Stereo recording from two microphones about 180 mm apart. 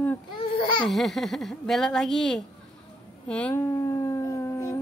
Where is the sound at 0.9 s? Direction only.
Centre (ahead or behind).